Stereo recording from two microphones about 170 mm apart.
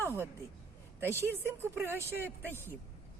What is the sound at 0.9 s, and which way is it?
A woman's voice, 15° right (ahead or behind).